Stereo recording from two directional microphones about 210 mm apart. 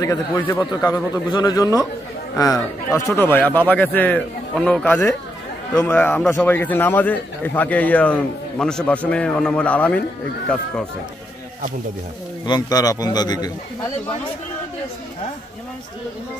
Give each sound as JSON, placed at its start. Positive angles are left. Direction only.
{"t": 0.0, "sound": "a man's voice", "side_deg": 15}
{"t": 12.4, "sound": "a man's voice", "side_deg": 20}